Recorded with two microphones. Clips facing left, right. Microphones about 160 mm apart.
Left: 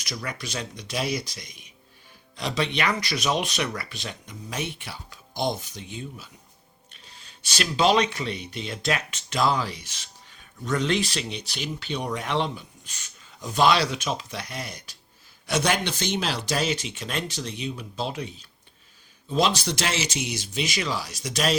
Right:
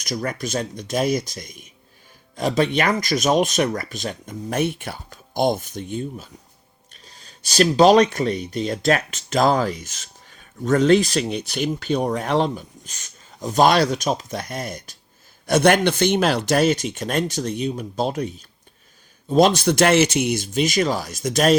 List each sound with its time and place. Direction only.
0.0 s speech: 45° right (ahead or behind)